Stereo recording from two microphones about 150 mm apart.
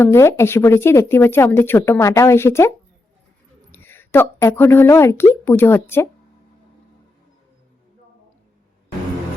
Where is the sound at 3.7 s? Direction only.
15° left (ahead or behind).